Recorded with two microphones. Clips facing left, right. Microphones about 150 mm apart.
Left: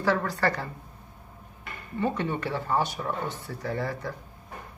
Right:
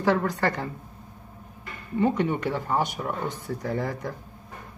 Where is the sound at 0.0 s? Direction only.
20° right (ahead or behind).